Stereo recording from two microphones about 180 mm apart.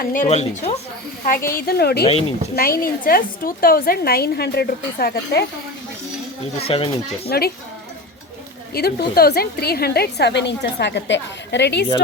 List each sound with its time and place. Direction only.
0.0 s speech: 50° left (ahead or behind)
1.5 s a woman's voice: 55° left (ahead or behind)
6.7 s speech: 30° left (ahead or behind)
7.3 s a woman's voice: 60° left (ahead or behind)
8.7 s a woman's voice: 60° left (ahead or behind)